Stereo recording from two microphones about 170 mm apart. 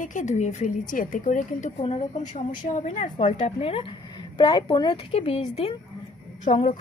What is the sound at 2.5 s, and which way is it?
A woman's voice, 50° left (ahead or behind).